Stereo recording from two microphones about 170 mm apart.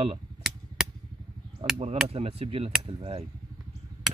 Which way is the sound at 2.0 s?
35° right (ahead or behind).